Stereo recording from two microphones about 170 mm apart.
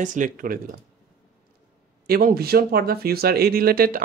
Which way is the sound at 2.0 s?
60° right (ahead or behind).